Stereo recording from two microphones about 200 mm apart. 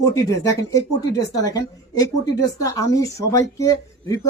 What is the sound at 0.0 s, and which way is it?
Speech, 15° left (ahead or behind).